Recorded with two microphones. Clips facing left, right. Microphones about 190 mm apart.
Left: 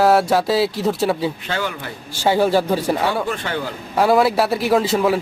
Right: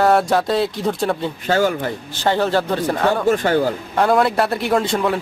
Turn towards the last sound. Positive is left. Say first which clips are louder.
# left 2 dB
turn(degrees=5)  # may be behind; listen again after turning